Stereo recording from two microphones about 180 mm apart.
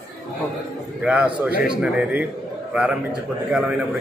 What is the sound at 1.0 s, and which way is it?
A man's voice, 5° right (ahead or behind).